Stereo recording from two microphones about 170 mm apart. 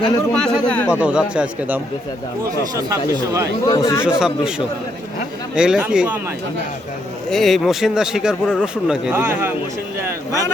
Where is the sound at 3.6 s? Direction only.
20° left (ahead or behind).